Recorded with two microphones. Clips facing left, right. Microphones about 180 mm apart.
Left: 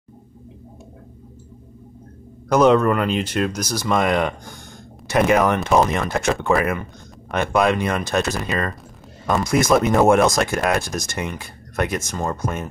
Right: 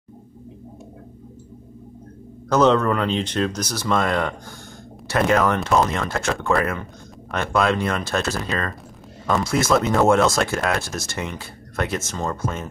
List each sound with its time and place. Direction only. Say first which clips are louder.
2.5 s speech: left 2 dB; 10° left (ahead or behind)
9.4 s speech: left 3 dB; 15° left (ahead or behind)